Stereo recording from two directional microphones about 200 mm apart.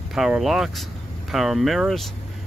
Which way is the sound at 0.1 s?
Centre (ahead or behind).